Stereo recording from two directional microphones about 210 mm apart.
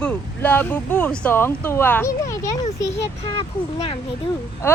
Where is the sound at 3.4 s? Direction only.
25° left (ahead or behind).